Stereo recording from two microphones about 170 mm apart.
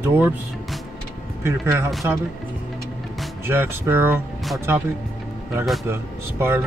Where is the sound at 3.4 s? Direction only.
10° right (ahead or behind).